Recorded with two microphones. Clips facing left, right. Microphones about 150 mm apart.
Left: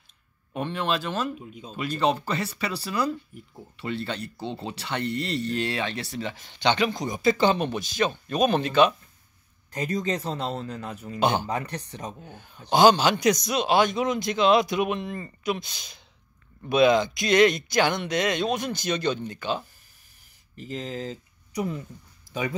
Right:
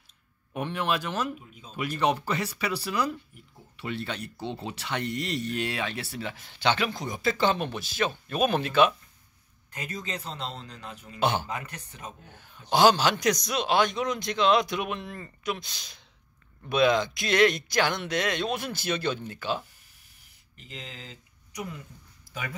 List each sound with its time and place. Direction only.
0.6 s speech: 5° right (ahead or behind)
9.7 s speech: 40° left (ahead or behind)
11.1 s speech: centre (ahead or behind)
11.4 s speech: 35° left (ahead or behind)
12.6 s speech: centre (ahead or behind)
20.5 s speech: 40° left (ahead or behind)
22.3 s speech: 25° left (ahead or behind)